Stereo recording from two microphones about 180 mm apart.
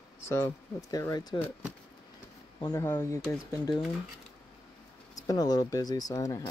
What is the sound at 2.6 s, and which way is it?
Speech, 15° left (ahead or behind).